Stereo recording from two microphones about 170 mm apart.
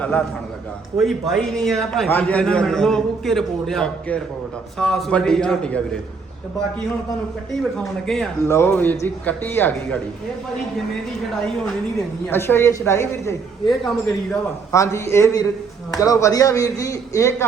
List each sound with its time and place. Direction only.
0.0 s a man's voice: 10° left (ahead or behind)
8.0 s a man's voice: centre (ahead or behind)
8.4 s speech: 15° left (ahead or behind)
12.3 s speech: 15° left (ahead or behind)
13.7 s a man's voice: centre (ahead or behind)
14.7 s a man's voice: 20° left (ahead or behind)